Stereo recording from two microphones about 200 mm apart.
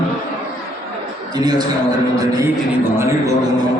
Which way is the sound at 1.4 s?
20° right (ahead or behind).